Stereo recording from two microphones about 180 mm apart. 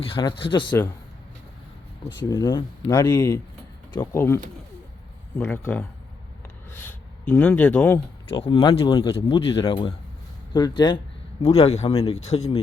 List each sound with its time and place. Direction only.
0.0 s speech: 25° left (ahead or behind)
2.0 s speech: 15° left (ahead or behind)
5.4 s speech: 5° left (ahead or behind)
7.9 s speech: 30° left (ahead or behind)
11.4 s speech: 35° left (ahead or behind)